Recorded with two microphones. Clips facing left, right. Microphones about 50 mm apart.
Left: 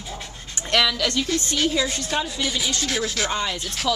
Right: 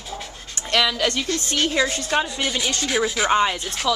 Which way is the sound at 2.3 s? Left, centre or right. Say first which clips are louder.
Right 1 dB; centre.